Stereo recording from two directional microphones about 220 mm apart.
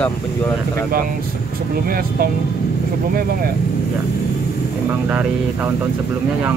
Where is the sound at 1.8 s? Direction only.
40° right (ahead or behind).